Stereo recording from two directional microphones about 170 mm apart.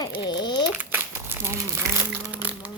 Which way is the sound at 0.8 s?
10° right (ahead or behind).